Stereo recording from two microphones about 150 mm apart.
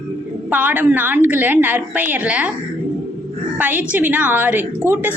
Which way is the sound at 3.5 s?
10° right (ahead or behind).